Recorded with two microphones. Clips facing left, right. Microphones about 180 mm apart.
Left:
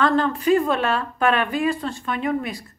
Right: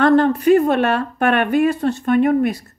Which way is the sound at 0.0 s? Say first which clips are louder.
Right 6 dB; 60° right (ahead or behind).